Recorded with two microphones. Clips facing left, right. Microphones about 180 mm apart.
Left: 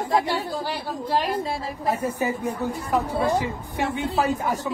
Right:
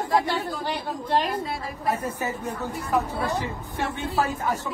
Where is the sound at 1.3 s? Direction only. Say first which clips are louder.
Left 3 dB; 30° left (ahead or behind).